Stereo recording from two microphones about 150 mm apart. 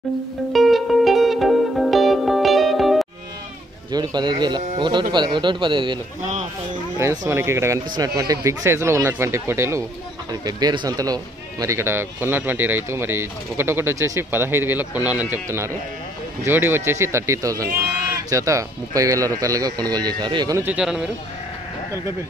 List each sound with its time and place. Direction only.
0.5 s music: centre (ahead or behind)
3.9 s speech: 30° right (ahead or behind)
7.0 s a man's voice: 20° right (ahead or behind)
20.5 s speech: 10° right (ahead or behind)